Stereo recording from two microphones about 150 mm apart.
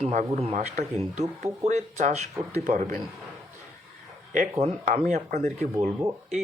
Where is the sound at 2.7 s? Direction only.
60° right (ahead or behind).